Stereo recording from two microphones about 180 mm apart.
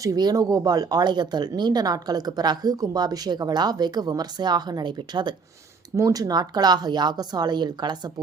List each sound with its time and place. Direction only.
0.0 s speech: 20° right (ahead or behind)